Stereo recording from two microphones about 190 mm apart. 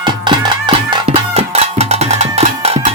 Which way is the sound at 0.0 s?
25° right (ahead or behind).